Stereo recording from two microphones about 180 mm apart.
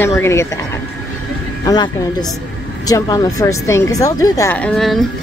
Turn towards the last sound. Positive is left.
turn(degrees=5)  # may be behind; listen again after turning